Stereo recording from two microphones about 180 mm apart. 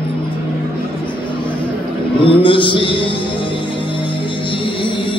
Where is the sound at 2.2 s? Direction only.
30° left (ahead or behind).